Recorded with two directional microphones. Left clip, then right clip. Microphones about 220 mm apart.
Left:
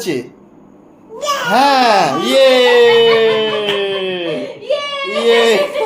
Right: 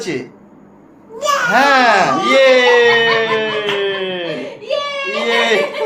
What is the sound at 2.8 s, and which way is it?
Music, 35° left (ahead or behind).